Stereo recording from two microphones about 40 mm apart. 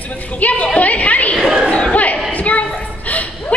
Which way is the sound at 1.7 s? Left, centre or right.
Left.